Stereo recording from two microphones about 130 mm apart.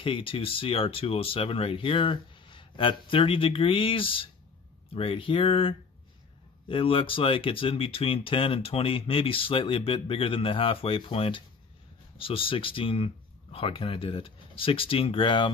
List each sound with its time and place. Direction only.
0.0 s speech: 40° left (ahead or behind)